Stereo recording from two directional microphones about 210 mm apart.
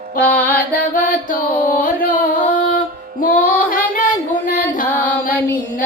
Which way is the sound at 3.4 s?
40° left (ahead or behind).